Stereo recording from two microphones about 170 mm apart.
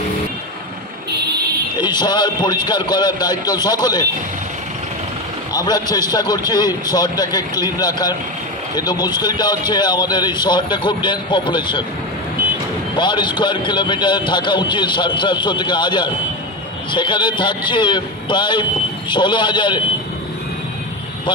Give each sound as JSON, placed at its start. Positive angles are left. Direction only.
{"t": 1.8, "sound": "a man's voice", "side_deg": 25}
{"t": 5.5, "sound": "a man's voice", "side_deg": 20}
{"t": 12.9, "sound": "a man's voice", "side_deg": 25}